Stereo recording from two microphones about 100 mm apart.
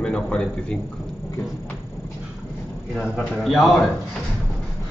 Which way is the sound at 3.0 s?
Centre (ahead or behind).